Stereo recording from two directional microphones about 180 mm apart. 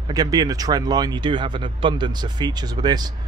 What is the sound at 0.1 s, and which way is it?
Speech, 20° right (ahead or behind).